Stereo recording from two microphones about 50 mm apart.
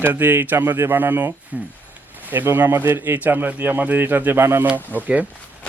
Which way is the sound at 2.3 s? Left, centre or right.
Right.